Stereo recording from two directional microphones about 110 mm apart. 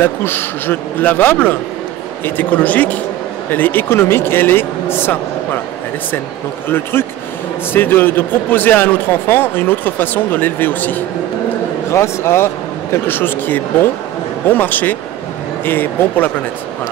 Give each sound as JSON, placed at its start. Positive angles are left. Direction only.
{"t": 0.0, "sound": "speech", "side_deg": 20}
{"t": 6.7, "sound": "speech", "side_deg": 20}